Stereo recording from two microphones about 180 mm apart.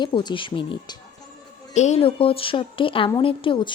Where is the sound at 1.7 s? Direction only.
40° left (ahead or behind).